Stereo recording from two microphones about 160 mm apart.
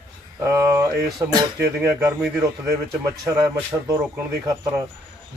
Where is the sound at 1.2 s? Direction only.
15° right (ahead or behind).